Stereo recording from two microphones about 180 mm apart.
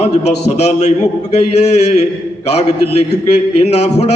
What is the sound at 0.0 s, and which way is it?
A man's voice, 35° left (ahead or behind).